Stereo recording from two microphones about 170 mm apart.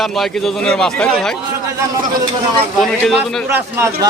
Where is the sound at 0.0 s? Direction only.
Centre (ahead or behind).